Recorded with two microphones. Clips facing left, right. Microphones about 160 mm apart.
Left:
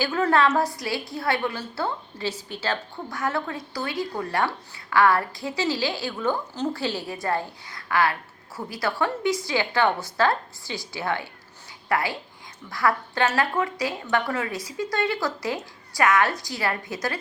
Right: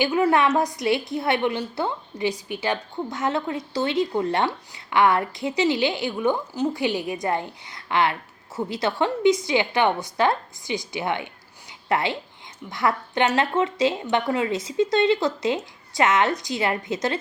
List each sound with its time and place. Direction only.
0.0 s a woman's voice: 15° right (ahead or behind)